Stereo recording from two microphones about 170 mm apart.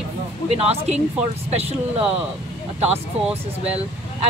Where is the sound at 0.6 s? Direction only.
35° right (ahead or behind).